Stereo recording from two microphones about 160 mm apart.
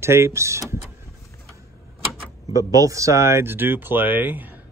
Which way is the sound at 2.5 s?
20° right (ahead or behind).